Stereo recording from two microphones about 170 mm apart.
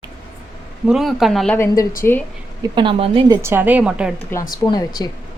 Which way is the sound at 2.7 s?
30° right (ahead or behind).